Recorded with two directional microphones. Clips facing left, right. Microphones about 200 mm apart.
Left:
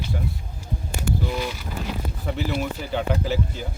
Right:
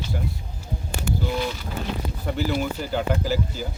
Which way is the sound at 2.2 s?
Centre (ahead or behind).